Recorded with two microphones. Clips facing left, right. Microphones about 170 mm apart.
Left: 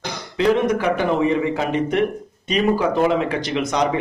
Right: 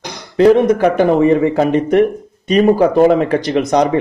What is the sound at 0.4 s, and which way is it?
A man's voice, 45° right (ahead or behind).